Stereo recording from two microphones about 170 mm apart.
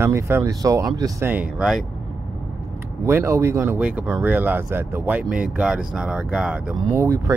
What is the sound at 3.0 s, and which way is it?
Speech, 15° right (ahead or behind).